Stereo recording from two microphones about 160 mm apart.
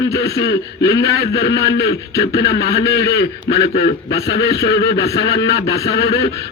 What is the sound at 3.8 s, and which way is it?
Speech, 85° left.